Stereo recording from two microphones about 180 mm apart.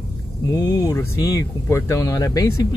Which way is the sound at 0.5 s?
20° left (ahead or behind).